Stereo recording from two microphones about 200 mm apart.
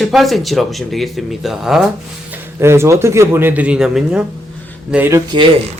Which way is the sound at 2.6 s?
15° right (ahead or behind).